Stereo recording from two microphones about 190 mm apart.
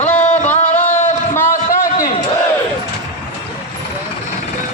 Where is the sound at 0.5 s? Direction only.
40° left (ahead or behind).